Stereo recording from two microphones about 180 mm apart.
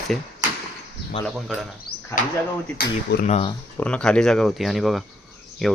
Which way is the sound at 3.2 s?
35° left (ahead or behind).